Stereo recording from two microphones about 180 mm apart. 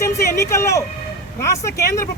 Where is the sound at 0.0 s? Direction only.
15° left (ahead or behind).